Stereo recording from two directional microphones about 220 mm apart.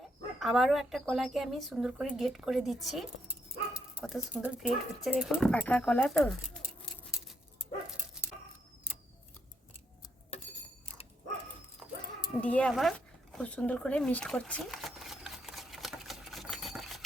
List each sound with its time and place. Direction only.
0.3 s speech: centre (ahead or behind)
6.5 s scissors: centre (ahead or behind)
10.3 s keys jangling: 30° left (ahead or behind)
12.4 s speech: 5° left (ahead or behind)
13.3 s a sound: 5° left (ahead or behind)